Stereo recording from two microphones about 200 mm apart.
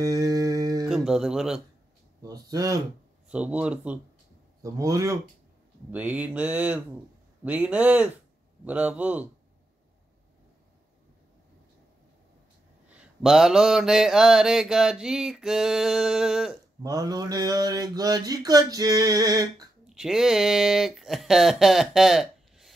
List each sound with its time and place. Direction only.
0.0 s a sound: 15° right (ahead or behind)
0.8 s speech: centre (ahead or behind)
2.2 s mantra: 20° right (ahead or behind)
3.3 s a sound: 5° right (ahead or behind)
12.9 s mantra: centre (ahead or behind)
16.8 s mantra: 20° right (ahead or behind)
19.9 s speech: centre (ahead or behind)